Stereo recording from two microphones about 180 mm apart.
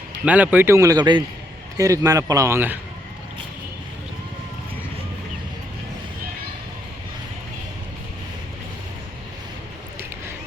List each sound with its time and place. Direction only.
0.3 s speech: 10° right (ahead or behind)